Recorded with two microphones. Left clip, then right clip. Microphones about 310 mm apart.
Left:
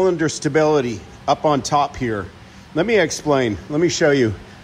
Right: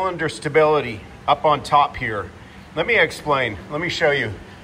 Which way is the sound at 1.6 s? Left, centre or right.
Left.